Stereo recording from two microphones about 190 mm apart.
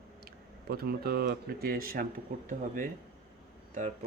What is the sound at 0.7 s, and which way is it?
Speech, 55° right (ahead or behind).